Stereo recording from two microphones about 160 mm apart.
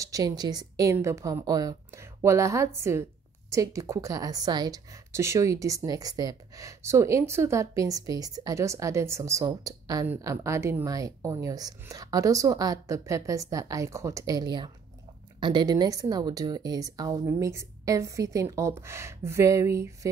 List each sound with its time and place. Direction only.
0.0 s a woman's voice: 20° right (ahead or behind)